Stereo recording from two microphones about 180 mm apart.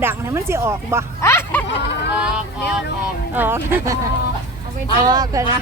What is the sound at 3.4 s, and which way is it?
Speech, 10° right (ahead or behind).